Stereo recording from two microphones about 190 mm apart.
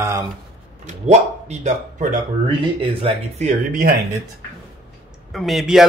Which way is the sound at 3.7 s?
50° right (ahead or behind).